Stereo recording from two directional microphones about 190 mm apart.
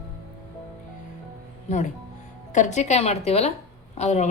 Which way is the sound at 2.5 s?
40° left (ahead or behind).